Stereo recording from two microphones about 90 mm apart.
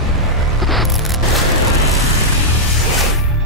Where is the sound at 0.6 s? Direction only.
Centre (ahead or behind).